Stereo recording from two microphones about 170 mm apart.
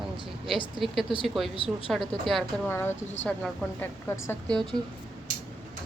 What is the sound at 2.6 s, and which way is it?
A woman's voice, 15° left (ahead or behind).